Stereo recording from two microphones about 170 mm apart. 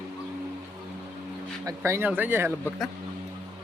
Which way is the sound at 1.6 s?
15° right (ahead or behind).